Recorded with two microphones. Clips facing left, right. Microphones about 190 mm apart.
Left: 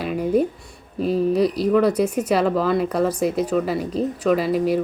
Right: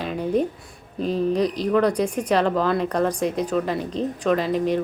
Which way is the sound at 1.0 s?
5° left (ahead or behind).